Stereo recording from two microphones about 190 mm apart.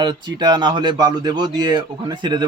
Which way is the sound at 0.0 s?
20° right (ahead or behind).